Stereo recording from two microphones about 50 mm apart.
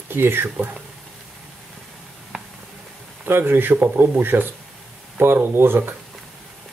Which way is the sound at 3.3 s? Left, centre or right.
Right.